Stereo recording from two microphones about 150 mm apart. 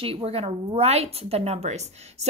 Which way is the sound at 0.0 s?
40° right (ahead or behind).